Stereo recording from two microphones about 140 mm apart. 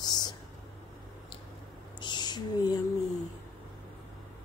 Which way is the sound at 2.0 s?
30° left (ahead or behind).